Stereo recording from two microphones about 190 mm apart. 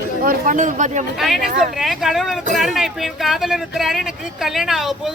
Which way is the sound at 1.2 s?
Centre (ahead or behind).